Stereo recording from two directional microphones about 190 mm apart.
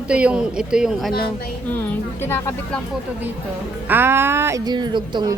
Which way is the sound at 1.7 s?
10° left (ahead or behind).